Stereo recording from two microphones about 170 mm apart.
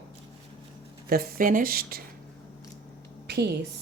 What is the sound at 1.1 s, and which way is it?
Speech, 60° right (ahead or behind).